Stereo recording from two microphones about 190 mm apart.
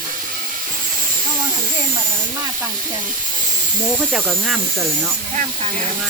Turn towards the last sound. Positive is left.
turn(degrees=0)  # may be behind; listen again after turning